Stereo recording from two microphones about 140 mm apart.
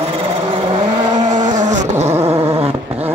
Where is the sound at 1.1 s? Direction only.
60° right (ahead or behind).